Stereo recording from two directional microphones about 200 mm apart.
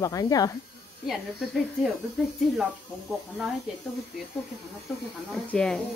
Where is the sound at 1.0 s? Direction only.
Centre (ahead or behind).